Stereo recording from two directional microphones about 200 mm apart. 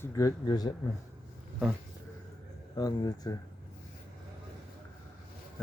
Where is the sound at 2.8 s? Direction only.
20° left (ahead or behind).